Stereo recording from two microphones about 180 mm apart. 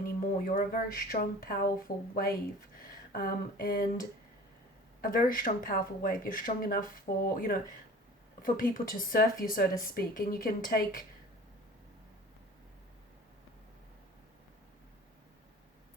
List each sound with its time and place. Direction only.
0.0 s speech: 55° left (ahead or behind)
2.9 s a sound: 55° left (ahead or behind)
4.9 s speech: 50° left (ahead or behind)